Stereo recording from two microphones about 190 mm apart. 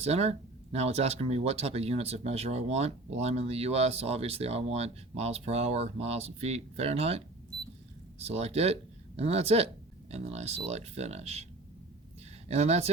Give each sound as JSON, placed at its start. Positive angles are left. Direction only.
{"t": 0.0, "sound": "speech", "side_deg": -35}
{"t": 8.2, "sound": "speech", "side_deg": -35}
{"t": 12.5, "sound": "speech", "side_deg": -35}